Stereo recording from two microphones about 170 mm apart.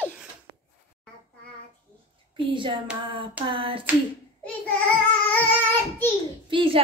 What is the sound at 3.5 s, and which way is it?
Child singing, 30° right (ahead or behind).